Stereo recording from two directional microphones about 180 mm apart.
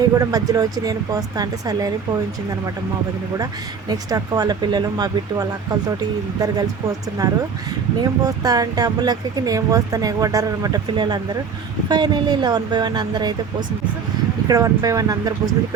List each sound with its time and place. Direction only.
0.1 s speech: 20° right (ahead or behind)
3.3 s speech: 20° right (ahead or behind)
14.4 s speech: 20° right (ahead or behind)